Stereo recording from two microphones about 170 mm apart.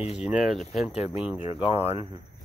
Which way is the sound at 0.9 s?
40° left (ahead or behind).